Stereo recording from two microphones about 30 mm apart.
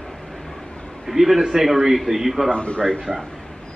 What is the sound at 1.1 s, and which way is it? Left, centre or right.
A man's voice, centre.